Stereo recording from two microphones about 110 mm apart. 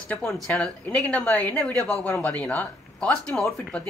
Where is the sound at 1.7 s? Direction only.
30° right (ahead or behind).